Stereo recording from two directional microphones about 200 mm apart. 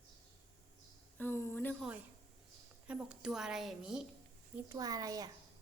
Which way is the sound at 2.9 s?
5° right (ahead or behind).